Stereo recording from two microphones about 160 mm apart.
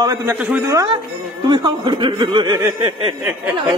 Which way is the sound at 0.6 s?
25° right (ahead or behind).